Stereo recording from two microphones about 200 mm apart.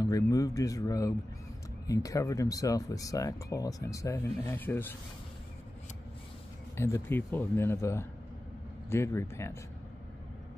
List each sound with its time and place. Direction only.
0.0 s speech: 20° left (ahead or behind)
6.8 s speech: 10° left (ahead or behind)